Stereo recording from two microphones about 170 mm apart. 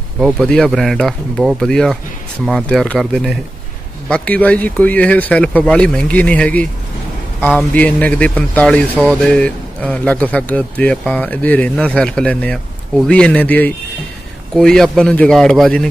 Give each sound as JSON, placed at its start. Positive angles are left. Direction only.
{"t": 0.2, "sound": "a man's voice", "side_deg": 0}